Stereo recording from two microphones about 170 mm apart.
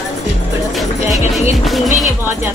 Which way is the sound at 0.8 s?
Centre (ahead or behind).